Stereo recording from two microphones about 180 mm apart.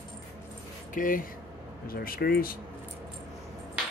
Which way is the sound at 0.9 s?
50° left (ahead or behind).